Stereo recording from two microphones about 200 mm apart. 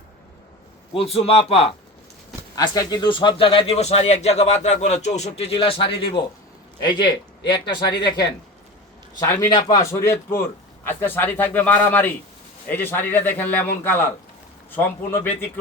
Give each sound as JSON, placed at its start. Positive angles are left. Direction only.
{"t": 0.9, "sound": "speech", "side_deg": 30}
{"t": 2.6, "sound": "a man's voice", "side_deg": 20}